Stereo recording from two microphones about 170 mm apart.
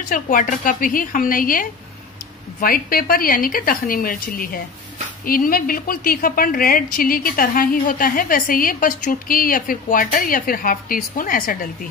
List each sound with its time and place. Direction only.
0.1 s a woman's voice: 50° left (ahead or behind)